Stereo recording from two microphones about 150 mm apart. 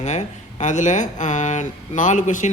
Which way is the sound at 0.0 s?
50° left (ahead or behind).